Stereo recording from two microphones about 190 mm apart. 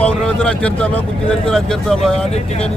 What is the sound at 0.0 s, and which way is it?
Speech, 5° left (ahead or behind).